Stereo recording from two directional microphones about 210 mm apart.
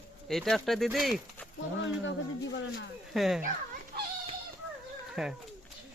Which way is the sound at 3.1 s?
Centre (ahead or behind).